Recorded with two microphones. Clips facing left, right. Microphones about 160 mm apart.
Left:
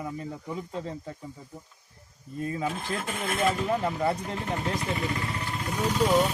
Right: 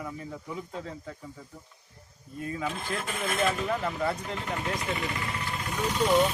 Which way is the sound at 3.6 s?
30° left (ahead or behind).